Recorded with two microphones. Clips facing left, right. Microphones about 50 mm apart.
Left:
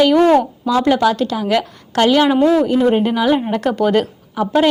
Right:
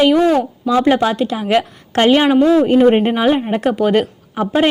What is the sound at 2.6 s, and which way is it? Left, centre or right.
Speech, right.